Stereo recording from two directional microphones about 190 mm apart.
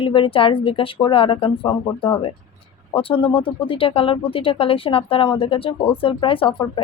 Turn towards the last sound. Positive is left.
turn(degrees=25)  # may be behind; listen again after turning